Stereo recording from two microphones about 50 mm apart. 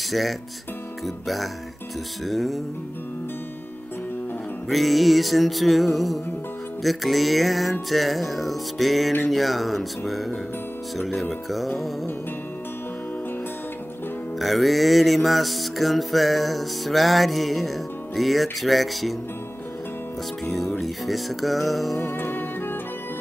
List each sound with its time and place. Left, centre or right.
0.1 s music: centre
4.6 s music: centre
14.4 s music: centre
20.8 s music: centre
22.0 s music: left